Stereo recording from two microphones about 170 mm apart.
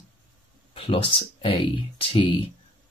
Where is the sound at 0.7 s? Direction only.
35° left (ahead or behind).